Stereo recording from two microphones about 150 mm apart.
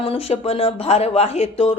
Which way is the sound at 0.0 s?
40° left (ahead or behind).